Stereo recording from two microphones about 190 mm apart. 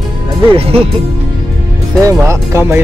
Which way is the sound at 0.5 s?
30° right (ahead or behind).